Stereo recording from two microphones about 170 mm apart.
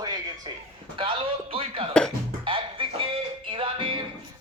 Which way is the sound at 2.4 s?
30° right (ahead or behind).